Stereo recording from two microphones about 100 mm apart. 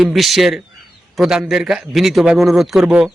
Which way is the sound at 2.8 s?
15° right (ahead or behind).